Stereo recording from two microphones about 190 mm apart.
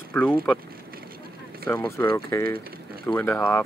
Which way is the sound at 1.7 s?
10° left (ahead or behind).